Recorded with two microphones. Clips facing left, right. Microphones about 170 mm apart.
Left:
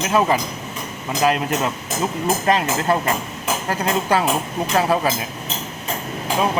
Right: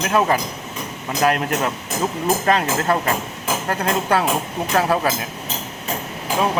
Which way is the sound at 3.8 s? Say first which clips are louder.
Left 1 dB; 5° left (ahead or behind).